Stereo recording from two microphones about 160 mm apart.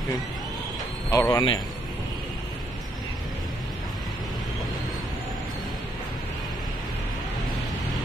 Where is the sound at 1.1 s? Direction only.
20° left (ahead or behind).